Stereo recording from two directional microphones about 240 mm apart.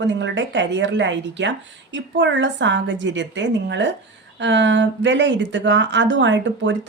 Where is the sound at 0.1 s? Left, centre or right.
Right.